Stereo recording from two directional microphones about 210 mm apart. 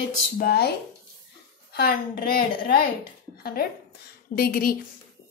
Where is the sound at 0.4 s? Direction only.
50° left (ahead or behind).